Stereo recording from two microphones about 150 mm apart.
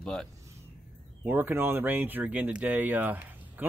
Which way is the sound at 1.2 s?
10° right (ahead or behind).